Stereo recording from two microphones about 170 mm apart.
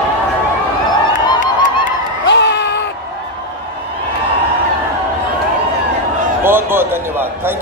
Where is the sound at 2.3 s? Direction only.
90° left.